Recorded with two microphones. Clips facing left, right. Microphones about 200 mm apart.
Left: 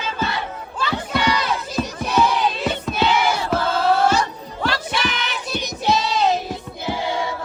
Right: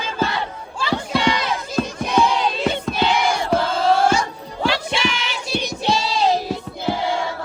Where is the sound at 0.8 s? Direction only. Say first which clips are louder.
Right 2 dB; 30° right (ahead or behind).